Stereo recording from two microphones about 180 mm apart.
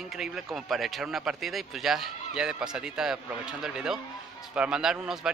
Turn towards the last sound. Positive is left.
turn(degrees=-5)  # may be behind; listen again after turning